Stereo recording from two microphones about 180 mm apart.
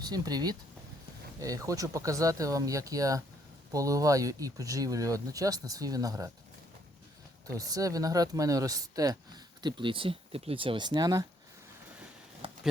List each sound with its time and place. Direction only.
0.0 s speech: 20° right (ahead or behind)
7.4 s speech: 20° right (ahead or behind)
12.4 s a sound: 30° right (ahead or behind)